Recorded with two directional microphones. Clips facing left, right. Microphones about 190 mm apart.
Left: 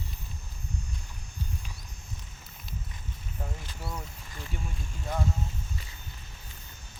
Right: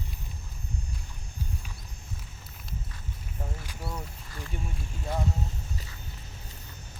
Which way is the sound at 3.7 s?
10° right (ahead or behind).